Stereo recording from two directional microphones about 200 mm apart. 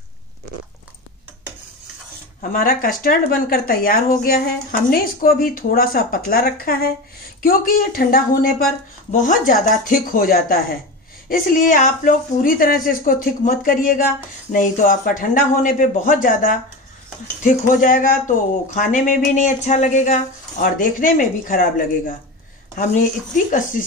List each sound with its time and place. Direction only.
2.5 s speech: 45° left (ahead or behind)